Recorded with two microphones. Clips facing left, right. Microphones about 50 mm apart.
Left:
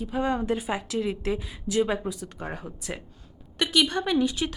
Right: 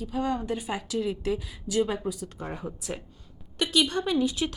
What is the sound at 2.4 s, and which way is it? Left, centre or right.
Speech, left.